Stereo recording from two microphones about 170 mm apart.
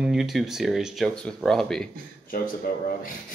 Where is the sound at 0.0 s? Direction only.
5° right (ahead or behind).